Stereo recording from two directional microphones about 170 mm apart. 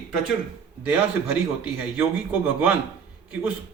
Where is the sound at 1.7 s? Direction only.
10° right (ahead or behind).